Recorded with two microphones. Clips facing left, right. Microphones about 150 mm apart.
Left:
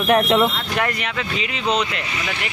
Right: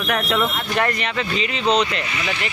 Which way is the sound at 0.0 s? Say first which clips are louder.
Left 6 dB; 25° left (ahead or behind).